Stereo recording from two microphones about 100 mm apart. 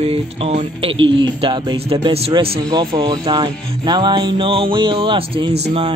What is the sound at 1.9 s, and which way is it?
Speech, 50° right (ahead or behind).